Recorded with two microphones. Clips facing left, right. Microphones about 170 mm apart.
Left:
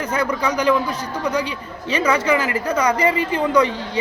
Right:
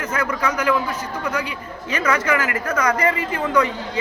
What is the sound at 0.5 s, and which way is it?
Speech, 30° left (ahead or behind).